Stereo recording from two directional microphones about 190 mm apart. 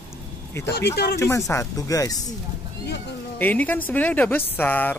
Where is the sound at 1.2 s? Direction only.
15° left (ahead or behind).